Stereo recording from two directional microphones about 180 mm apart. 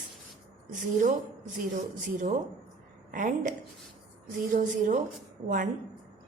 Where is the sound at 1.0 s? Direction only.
45° right (ahead or behind).